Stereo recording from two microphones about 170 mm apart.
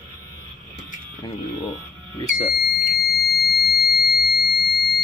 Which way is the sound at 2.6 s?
65° left (ahead or behind).